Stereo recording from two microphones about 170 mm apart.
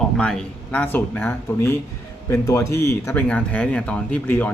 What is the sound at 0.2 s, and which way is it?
Speech, 5° left (ahead or behind).